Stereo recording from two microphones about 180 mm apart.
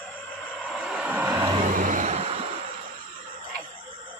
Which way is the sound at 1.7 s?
45° right (ahead or behind).